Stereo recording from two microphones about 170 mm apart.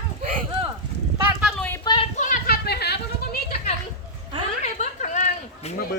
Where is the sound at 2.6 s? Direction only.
70° left (ahead or behind).